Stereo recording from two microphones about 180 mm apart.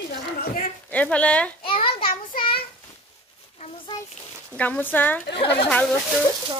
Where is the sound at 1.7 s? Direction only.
30° left (ahead or behind).